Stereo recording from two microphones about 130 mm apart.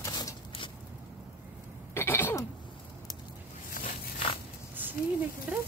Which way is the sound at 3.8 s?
90° left.